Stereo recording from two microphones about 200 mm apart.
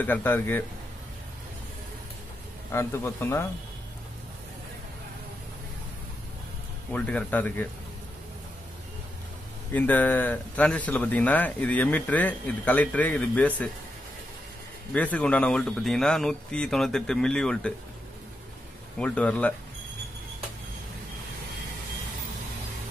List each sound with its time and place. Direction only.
0.0 s speech: 10° left (ahead or behind)
2.7 s speech: 10° left (ahead or behind)
6.9 s speech: 5° left (ahead or behind)
9.8 s speech: 10° left (ahead or behind)
15.0 s speech: 5° left (ahead or behind)
18.9 s speech: 5° left (ahead or behind)